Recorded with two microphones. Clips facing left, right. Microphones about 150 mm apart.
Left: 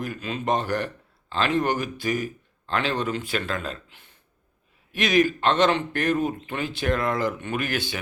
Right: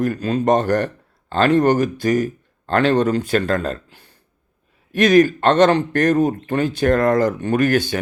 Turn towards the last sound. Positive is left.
turn(degrees=-45)  # may be behind; listen again after turning